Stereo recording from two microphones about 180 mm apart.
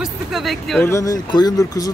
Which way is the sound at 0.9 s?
20° left (ahead or behind).